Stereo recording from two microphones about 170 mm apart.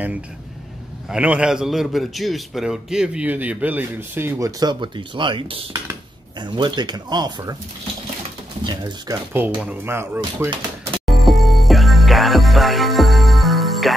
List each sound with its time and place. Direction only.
1.0 s a man's voice: 5° right (ahead or behind); by 7.5 s 25° right (ahead or behind)
8.6 s speech: 25° right (ahead or behind)
9.6 s a man's voice: 10° right (ahead or behind)
11.1 s music: centre (ahead or behind)